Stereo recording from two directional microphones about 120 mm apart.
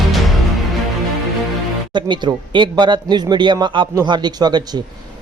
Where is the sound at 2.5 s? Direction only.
40° right (ahead or behind).